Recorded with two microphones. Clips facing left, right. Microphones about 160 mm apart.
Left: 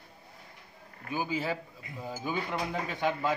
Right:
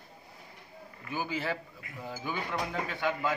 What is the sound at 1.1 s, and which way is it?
A man's voice, 15° left (ahead or behind).